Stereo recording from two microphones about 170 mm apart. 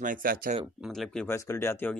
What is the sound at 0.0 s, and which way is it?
Speech, 55° right (ahead or behind).